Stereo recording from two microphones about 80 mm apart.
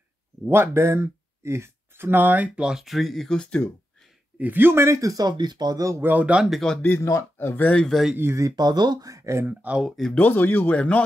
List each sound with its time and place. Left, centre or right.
0.5 s speech: right; by 3.6 s centre
4.4 s speech: right
6.0 s speech: centre
7.0 s speech: left
7.3 s speech: left
7.8 s speech: centre
8.2 s speech: right
9.5 s speech: centre
9.8 s speech: centre
10.1 s speech: left